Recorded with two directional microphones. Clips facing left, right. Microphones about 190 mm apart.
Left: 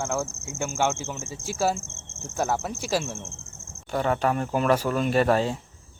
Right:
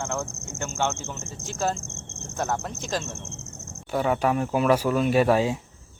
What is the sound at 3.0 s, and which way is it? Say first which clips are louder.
Speech: left 2 dB; 20° right (ahead or behind).